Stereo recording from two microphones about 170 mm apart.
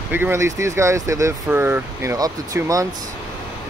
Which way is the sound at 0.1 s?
15° right (ahead or behind).